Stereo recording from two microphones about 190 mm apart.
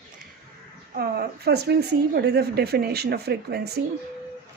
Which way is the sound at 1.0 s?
55° right (ahead or behind).